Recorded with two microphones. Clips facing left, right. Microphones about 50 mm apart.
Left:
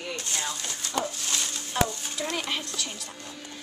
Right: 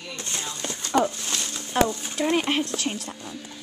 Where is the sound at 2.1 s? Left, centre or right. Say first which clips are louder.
Right 7 dB; right.